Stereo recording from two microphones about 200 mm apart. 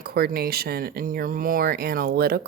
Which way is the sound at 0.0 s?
50° right (ahead or behind).